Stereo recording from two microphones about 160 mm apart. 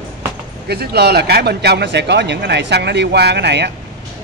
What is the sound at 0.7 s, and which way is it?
Speech, 90° right.